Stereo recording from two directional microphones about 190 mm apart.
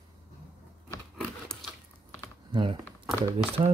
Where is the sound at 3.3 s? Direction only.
30° right (ahead or behind).